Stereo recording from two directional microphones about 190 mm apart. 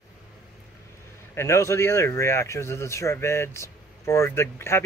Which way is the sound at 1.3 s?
15° left (ahead or behind).